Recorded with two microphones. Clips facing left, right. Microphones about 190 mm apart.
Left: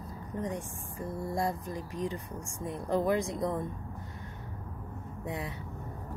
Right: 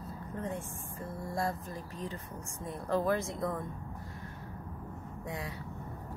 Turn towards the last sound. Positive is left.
turn(degrees=20)  # may be behind; listen again after turning